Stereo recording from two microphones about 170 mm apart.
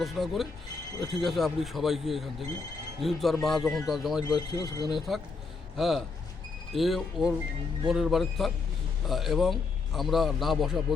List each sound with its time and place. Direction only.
0.0 s a man's voice: centre (ahead or behind)
4.2 s speech: 25° left (ahead or behind)
4.9 s a man's voice: centre (ahead or behind)